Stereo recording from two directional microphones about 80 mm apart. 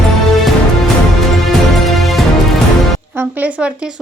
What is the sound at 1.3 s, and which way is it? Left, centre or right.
Music, centre.